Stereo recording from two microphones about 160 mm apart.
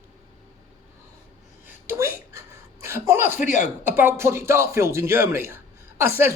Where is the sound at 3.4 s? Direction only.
50° left (ahead or behind).